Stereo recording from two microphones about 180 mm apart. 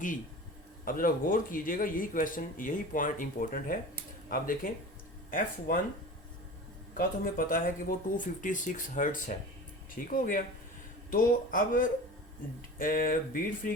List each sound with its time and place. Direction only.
0.9 s speech: 50° left (ahead or behind)
6.9 s speech: 55° left (ahead or behind)